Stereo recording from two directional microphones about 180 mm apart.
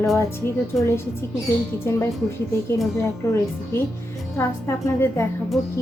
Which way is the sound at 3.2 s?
15° left (ahead or behind).